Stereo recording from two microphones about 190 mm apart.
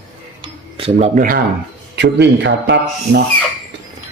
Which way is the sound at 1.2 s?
45° right (ahead or behind).